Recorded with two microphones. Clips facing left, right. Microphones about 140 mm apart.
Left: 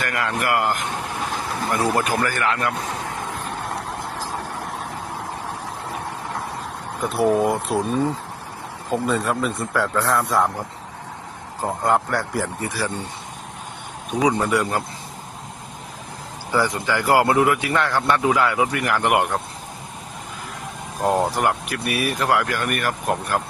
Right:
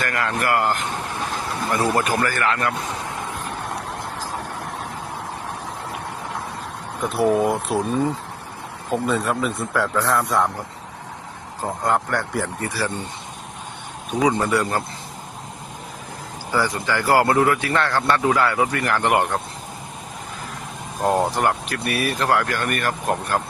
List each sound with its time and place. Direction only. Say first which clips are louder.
0.0 s speech: right 1 dB; 10° left (ahead or behind)
2.2 s speech: right 1 dB; 10° left (ahead or behind)
3.3 s vehicle: left 1 dB; centre (ahead or behind)
7.0 s a man's voice: even; centre (ahead or behind)
11.6 s speech: left 2 dB; 5° left (ahead or behind)
14.1 s speech: even; 5° left (ahead or behind)
16.5 s speech: left 1 dB; 20° left (ahead or behind)
21.0 s speech: even; centre (ahead or behind)